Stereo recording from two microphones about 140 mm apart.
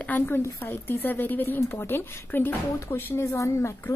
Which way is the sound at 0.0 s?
15° left (ahead or behind).